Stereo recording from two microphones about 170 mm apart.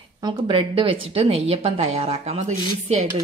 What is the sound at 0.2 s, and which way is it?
Speech, 30° right (ahead or behind).